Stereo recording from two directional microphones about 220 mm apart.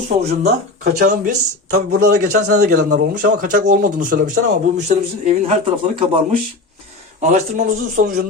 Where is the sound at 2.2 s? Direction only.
40° right (ahead or behind).